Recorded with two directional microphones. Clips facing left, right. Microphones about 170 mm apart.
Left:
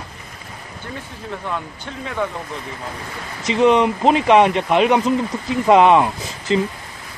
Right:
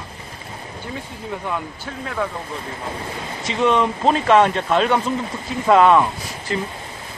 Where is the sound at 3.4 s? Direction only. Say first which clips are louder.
Left 4 dB; 20° left (ahead or behind).